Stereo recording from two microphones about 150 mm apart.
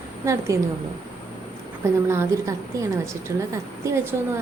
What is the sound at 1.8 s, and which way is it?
A woman's voice, 15° right (ahead or behind).